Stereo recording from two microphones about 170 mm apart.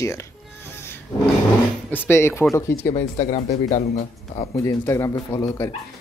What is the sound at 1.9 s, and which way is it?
Speech, 15° left (ahead or behind).